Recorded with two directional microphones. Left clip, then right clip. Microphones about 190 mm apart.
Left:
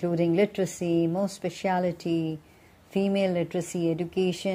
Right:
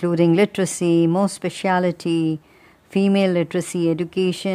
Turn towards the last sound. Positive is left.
turn(degrees=-35)  # may be behind; listen again after turning